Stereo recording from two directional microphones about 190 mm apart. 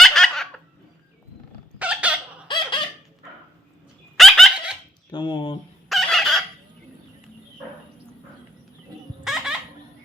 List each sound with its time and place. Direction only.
0.0 s giggle: centre (ahead or behind)
1.8 s chicken: 5° right (ahead or behind)
2.5 s squeak: 25° left (ahead or behind)
4.2 s dog: centre (ahead or behind)
5.1 s speech: 25° left (ahead or behind)
5.9 s chicken: centre (ahead or behind)
9.2 s baby laughter: centre (ahead or behind)